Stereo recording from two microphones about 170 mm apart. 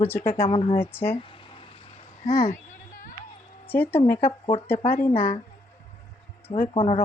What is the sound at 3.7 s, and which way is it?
Speech, 10° left (ahead or behind).